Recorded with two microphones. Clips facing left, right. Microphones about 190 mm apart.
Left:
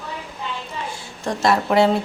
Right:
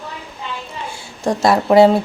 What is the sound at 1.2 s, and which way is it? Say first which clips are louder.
Speech: right 4 dB; 35° right (ahead or behind).